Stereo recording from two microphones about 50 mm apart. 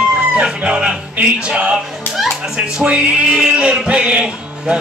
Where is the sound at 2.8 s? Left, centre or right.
Right.